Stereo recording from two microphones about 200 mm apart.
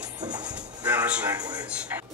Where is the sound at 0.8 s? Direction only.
10° right (ahead or behind).